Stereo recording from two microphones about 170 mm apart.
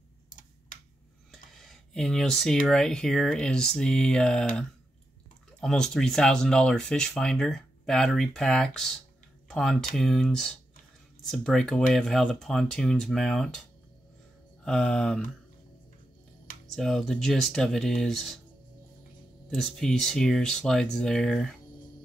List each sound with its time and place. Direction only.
0.3 s tick-tock: 50° left (ahead or behind)
1.3 s a sound: centre (ahead or behind)
2.6 s speech: 5° left (ahead or behind)
5.6 s speech: 5° left (ahead or behind)
14.6 s speech: 5° left (ahead or behind)
16.7 s speech: centre (ahead or behind)
19.5 s speech: centre (ahead or behind)